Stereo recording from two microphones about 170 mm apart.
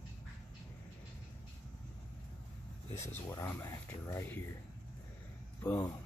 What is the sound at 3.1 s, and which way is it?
Speech, 15° left (ahead or behind).